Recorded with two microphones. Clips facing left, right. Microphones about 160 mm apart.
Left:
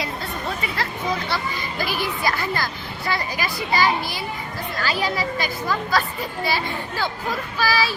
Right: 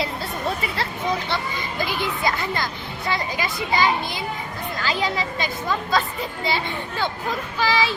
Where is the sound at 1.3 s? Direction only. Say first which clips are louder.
Even; 20° right (ahead or behind).